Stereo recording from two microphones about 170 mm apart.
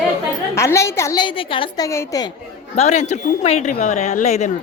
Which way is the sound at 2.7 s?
45° left (ahead or behind).